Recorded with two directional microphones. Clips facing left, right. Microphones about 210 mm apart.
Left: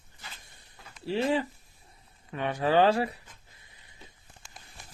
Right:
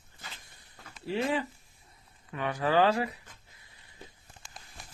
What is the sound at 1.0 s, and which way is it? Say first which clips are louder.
Speech: left 3 dB; 30° left (ahead or behind).